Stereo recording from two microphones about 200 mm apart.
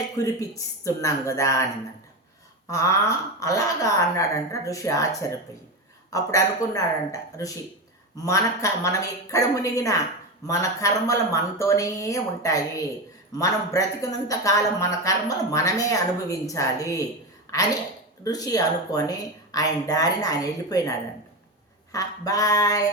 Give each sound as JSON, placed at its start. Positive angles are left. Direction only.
{"t": 0.2, "sound": "speech", "side_deg": 15}
{"t": 2.6, "sound": "speech", "side_deg": 15}
{"t": 18.2, "sound": "speech", "side_deg": 20}
{"t": 21.9, "sound": "speech", "side_deg": 15}